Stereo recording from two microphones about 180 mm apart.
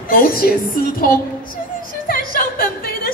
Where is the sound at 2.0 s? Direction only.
55° left (ahead or behind).